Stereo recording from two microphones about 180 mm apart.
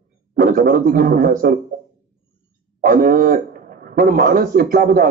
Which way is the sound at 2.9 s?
55° right (ahead or behind).